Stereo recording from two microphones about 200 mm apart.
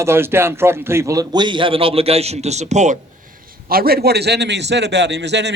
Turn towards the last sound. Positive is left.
turn(degrees=-60)  # may be behind; listen again after turning